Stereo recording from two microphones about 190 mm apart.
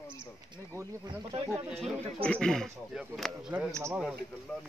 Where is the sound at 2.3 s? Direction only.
5° left (ahead or behind).